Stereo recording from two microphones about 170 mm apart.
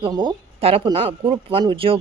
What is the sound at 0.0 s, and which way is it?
Speech, 25° right (ahead or behind).